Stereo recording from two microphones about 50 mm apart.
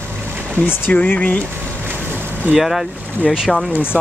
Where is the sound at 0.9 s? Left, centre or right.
Left.